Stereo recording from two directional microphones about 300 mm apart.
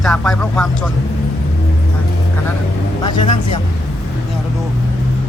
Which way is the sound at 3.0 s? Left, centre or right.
Centre.